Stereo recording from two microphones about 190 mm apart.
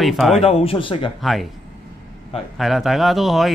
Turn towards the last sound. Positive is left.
turn(degrees=0)  # may be behind; listen again after turning